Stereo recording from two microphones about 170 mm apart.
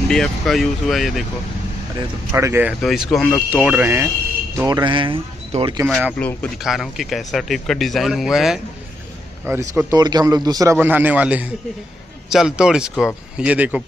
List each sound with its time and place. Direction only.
0.1 s speech: centre (ahead or behind)
2.3 s a man's voice: 15° right (ahead or behind)
2.8 s speech: centre (ahead or behind)
3.4 s a man's voice: 10° right (ahead or behind); by 5.9 s 30° right (ahead or behind)
6.1 s speech: 5° left (ahead or behind)
9.8 s a man's voice: 20° right (ahead or behind)